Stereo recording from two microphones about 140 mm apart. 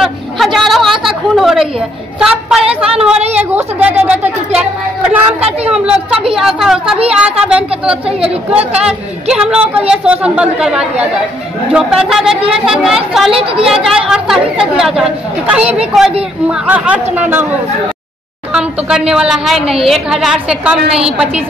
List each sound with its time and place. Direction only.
0.0 s chatter: centre (ahead or behind)
2.1 s speech: 5° right (ahead or behind)
5.7 s speech: 5° right (ahead or behind)
13.3 s speech: 40° right (ahead or behind)
13.8 s speech: 5° right (ahead or behind)
18.5 s speech: 5° right (ahead or behind)